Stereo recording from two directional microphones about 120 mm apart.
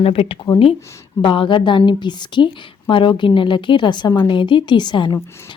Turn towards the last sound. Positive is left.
turn(degrees=40)  # may be behind; listen again after turning